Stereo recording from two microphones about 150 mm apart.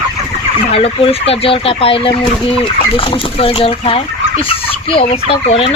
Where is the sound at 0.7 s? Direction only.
40° left (ahead or behind).